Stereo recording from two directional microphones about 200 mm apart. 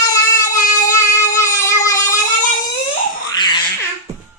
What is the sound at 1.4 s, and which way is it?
Music, 15° left (ahead or behind).